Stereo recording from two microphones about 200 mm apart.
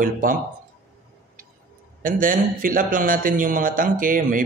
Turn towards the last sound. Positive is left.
turn(degrees=-45)  # may be behind; listen again after turning